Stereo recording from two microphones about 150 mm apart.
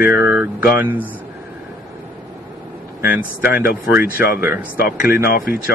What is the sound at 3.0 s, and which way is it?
Speech, 10° right (ahead or behind).